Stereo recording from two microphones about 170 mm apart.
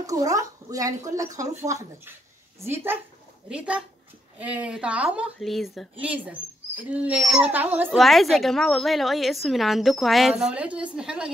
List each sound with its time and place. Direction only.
0.0 s a woman's voice: 20° right (ahead or behind)
8.0 s a woman's voice: centre (ahead or behind)